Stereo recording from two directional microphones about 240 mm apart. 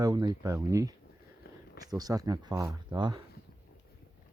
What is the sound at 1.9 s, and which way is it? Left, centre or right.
Speech, centre.